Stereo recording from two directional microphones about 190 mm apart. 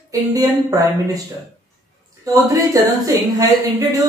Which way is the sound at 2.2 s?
20° right (ahead or behind).